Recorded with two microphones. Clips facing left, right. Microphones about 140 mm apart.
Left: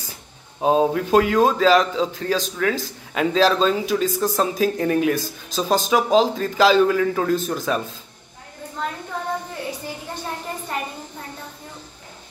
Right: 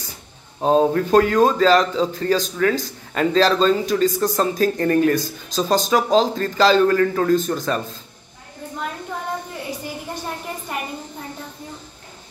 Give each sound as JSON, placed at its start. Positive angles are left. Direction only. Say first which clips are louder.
{"t": 0.6, "sound": "a man's voice", "louder": "right 2 dB", "side_deg": 5}